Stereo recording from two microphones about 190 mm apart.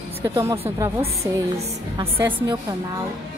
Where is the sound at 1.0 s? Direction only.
35° right (ahead or behind).